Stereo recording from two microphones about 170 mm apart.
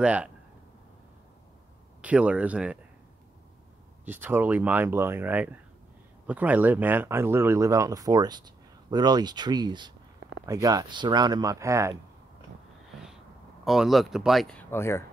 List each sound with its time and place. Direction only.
0.0 s speech: 5° right (ahead or behind)
2.0 s speech: 5° right (ahead or behind)
4.0 s speech: 10° right (ahead or behind)
13.7 s speech: centre (ahead or behind); by 15.0 s 15° left (ahead or behind)